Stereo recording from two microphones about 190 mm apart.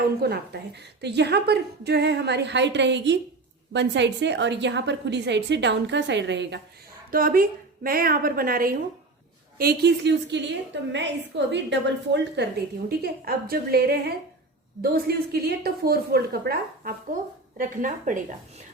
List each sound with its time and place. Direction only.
0.2 s a woman's voice: 60° right (ahead or behind)
7.1 s a woman's voice: 50° right (ahead or behind); by 12.5 s 65° right (ahead or behind)
12.9 s a woman's voice: 55° right (ahead or behind)